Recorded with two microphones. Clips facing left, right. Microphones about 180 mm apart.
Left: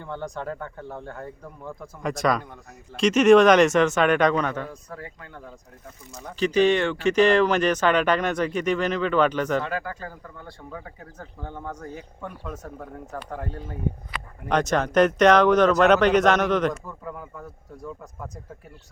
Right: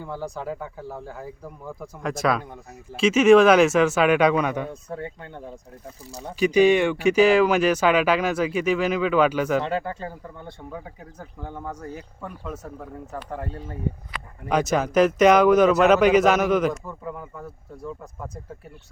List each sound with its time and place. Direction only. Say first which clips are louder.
0.0 s speech: right 1 dB; 5° right (ahead or behind)
4.7 s speech: right 6 dB; 25° right (ahead or behind)
6.4 s speech: right 3 dB; 10° right (ahead or behind)
9.6 s speech: right 3 dB; 25° right (ahead or behind); by 18.3 s 5° right (ahead or behind)